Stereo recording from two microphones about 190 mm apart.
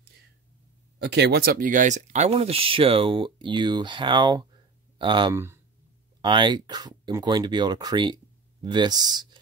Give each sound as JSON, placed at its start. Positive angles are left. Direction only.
{"t": 0.9, "sound": "speech", "side_deg": -60}
{"t": 5.3, "sound": "speech", "side_deg": -15}
{"t": 6.2, "sound": "speech", "side_deg": -25}